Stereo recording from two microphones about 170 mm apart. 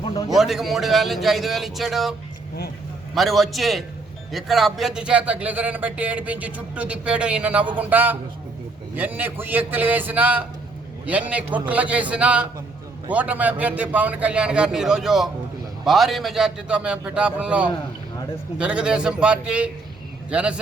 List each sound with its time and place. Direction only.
0.0 s a sound: 20° left (ahead or behind)
0.3 s a man's voice: centre (ahead or behind)
3.2 s a man's voice: centre (ahead or behind)